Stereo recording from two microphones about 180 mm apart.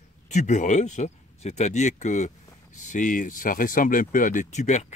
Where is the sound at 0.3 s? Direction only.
40° left (ahead or behind).